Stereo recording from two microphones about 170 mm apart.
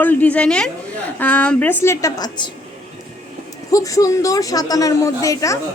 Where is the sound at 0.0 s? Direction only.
10° left (ahead or behind).